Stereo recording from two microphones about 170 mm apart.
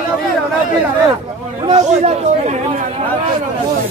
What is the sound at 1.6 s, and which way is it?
Speech, 40° right (ahead or behind).